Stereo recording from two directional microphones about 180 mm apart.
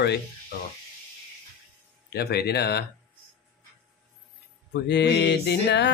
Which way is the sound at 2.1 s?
65° left (ahead or behind).